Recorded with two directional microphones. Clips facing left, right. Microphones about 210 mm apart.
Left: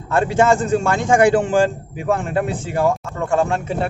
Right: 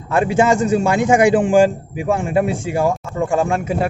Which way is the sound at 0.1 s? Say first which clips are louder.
Right 1 dB; 15° right (ahead or behind).